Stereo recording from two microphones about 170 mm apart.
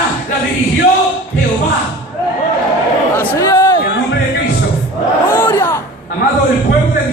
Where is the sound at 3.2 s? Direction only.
20° left (ahead or behind).